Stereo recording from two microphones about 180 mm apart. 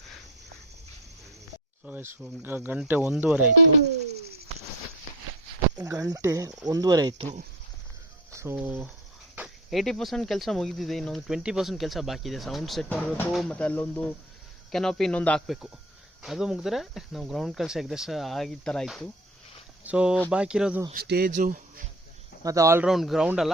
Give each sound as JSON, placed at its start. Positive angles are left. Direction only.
{"t": 1.8, "sound": "speech", "side_deg": -10}
{"t": 5.7, "sound": "speech", "side_deg": -20}
{"t": 8.3, "sound": "speech", "side_deg": -15}
{"t": 20.9, "sound": "speech", "side_deg": -60}
{"t": 21.3, "sound": "speech", "side_deg": -50}
{"t": 22.4, "sound": "speech", "side_deg": -15}
{"t": 22.9, "sound": "speech", "side_deg": 0}